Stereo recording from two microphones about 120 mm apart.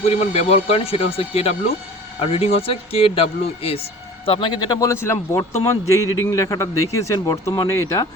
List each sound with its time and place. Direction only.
0.1 s speech: 65° left (ahead or behind)
4.3 s a man's voice: 40° left (ahead or behind); by 8.0 s 20° left (ahead or behind)